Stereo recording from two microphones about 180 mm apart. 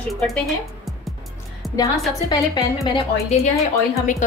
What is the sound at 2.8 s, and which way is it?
Speech, 30° left (ahead or behind).